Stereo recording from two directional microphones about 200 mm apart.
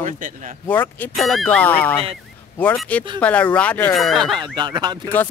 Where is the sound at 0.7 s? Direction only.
10° left (ahead or behind).